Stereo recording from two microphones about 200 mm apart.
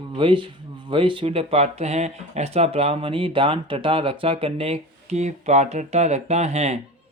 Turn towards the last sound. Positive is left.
turn(degrees=-35)  # may be behind; listen again after turning